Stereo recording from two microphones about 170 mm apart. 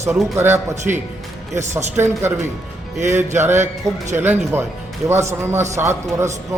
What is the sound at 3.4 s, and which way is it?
A man's voice, 15° right (ahead or behind).